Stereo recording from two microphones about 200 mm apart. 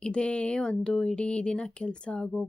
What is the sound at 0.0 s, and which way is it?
Speech, 5° left (ahead or behind).